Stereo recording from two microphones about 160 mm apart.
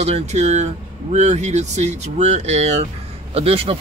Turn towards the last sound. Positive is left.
turn(degrees=-40)  # may be behind; listen again after turning